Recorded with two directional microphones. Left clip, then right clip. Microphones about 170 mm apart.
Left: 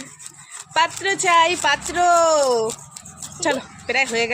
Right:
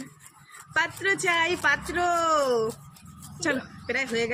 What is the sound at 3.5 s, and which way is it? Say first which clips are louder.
Speech: left 6 dB; 55° left (ahead or behind).